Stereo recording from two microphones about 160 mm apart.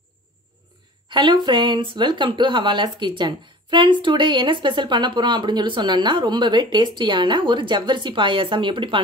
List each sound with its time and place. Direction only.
1.0 s speech: 30° right (ahead or behind)